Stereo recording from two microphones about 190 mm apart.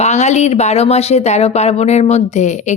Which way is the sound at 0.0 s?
35° left (ahead or behind).